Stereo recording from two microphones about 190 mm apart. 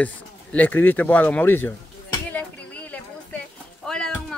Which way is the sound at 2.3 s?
10° left (ahead or behind).